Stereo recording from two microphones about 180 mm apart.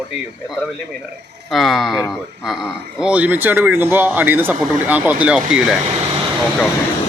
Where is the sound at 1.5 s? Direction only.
Centre (ahead or behind).